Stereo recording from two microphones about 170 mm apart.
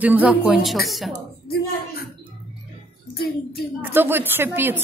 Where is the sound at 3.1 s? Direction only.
60° left (ahead or behind).